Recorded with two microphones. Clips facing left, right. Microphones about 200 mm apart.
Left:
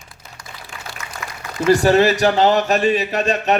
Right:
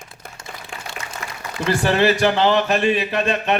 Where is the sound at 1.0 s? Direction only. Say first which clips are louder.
Right 1 dB; 25° right (ahead or behind).